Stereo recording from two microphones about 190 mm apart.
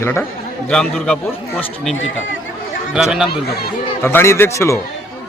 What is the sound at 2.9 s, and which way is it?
Speech, 5° right (ahead or behind).